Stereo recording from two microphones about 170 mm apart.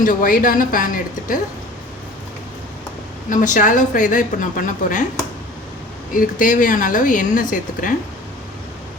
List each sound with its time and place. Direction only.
0.0 s a woman's voice: 50° left (ahead or behind)
3.2 s a woman's voice: 50° left (ahead or behind)
6.1 s a woman's voice: 55° left (ahead or behind)